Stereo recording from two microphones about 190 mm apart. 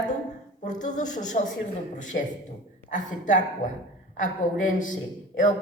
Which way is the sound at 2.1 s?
55° left (ahead or behind).